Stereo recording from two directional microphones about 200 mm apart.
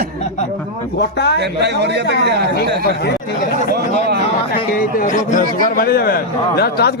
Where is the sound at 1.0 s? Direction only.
60° left (ahead or behind).